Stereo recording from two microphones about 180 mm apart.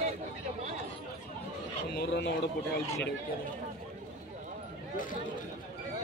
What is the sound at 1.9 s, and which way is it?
Speech, 70° left (ahead or behind).